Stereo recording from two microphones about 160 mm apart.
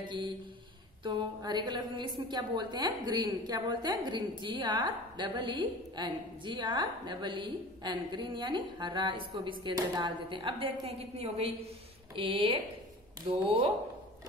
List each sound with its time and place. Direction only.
0.0 s a woman's voice: 30° right (ahead or behind)